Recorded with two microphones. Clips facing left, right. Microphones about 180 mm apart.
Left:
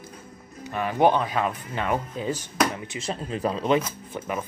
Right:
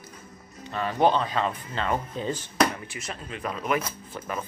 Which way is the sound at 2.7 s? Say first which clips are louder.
Left 6 dB; 25° left (ahead or behind).